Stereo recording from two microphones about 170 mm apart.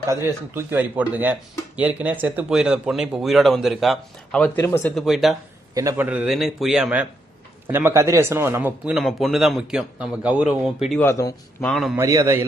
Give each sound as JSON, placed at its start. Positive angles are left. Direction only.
{"t": 0.1, "sound": "speech", "side_deg": -15}
{"t": 4.9, "sound": "speech", "side_deg": 0}
{"t": 5.7, "sound": "a man's voice", "side_deg": -20}
{"t": 6.1, "sound": "speech", "side_deg": -5}
{"t": 11.0, "sound": "speech", "side_deg": 20}
{"t": 11.6, "sound": "speech", "side_deg": 0}
{"t": 11.9, "sound": "speech", "side_deg": -20}